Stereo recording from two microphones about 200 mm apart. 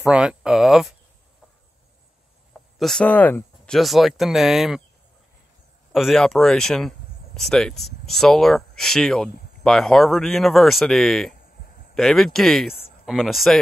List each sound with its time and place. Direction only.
0.0 s speech: 5° right (ahead or behind)
2.8 s speech: 5° left (ahead or behind)
5.9 s speech: centre (ahead or behind)
11.3 s a sound: 40° left (ahead or behind)
11.9 s speech: centre (ahead or behind)